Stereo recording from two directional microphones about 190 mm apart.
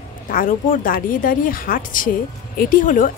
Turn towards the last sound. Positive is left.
turn(degrees=45)  # may be behind; listen again after turning